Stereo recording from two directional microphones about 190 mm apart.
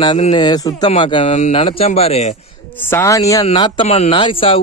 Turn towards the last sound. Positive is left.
turn(degrees=25)  # may be behind; listen again after turning